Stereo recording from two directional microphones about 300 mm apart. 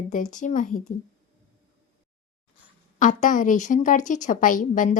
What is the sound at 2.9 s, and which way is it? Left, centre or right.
A woman's voice, left.